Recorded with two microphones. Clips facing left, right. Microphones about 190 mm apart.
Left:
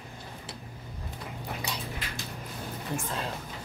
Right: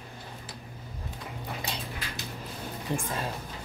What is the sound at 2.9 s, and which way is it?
Speech, 20° right (ahead or behind).